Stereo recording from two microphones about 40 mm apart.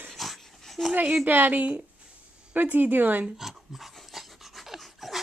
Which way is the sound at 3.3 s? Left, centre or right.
Centre.